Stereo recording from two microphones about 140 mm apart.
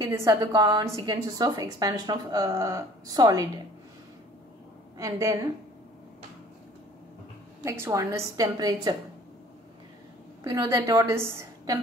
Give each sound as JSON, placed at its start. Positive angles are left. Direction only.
{"t": 0.0, "sound": "a woman's voice", "side_deg": -25}
{"t": 4.9, "sound": "a woman's voice", "side_deg": -25}
{"t": 7.8, "sound": "a woman's voice", "side_deg": -20}
{"t": 10.4, "sound": "a woman's voice", "side_deg": -30}